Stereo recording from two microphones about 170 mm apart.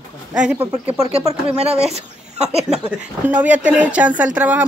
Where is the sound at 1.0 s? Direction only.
35° right (ahead or behind).